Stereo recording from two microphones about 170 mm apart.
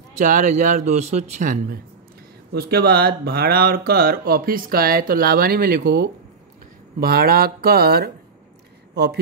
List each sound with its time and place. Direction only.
0.2 s speech: 50° right (ahead or behind)
2.5 s a man's voice: 65° right (ahead or behind)